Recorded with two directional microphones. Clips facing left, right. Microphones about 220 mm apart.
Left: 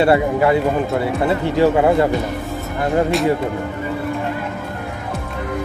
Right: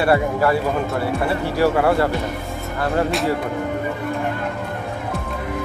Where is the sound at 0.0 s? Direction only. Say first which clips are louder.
Left 3 dB; 20° left (ahead or behind).